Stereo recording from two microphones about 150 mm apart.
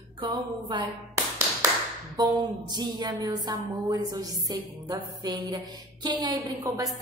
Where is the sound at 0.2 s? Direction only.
30° right (ahead or behind).